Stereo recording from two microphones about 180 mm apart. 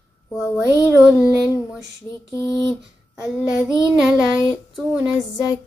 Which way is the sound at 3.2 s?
5° right (ahead or behind).